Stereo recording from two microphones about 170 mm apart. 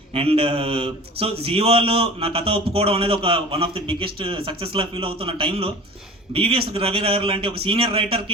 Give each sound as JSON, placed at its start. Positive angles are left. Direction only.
{"t": 0.1, "sound": "a man's voice", "side_deg": -35}